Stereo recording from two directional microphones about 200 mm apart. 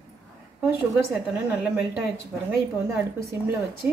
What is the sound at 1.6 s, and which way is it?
Speech, 10° right (ahead or behind).